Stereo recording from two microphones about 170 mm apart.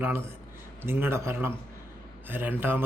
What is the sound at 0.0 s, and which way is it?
Speech, 15° right (ahead or behind).